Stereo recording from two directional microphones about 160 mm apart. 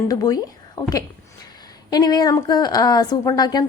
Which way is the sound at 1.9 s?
25° left (ahead or behind).